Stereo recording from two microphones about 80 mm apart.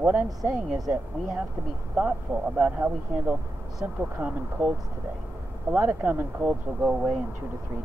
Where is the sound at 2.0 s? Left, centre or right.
Right.